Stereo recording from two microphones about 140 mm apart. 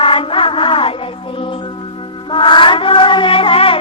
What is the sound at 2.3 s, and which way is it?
Chant, 35° left (ahead or behind).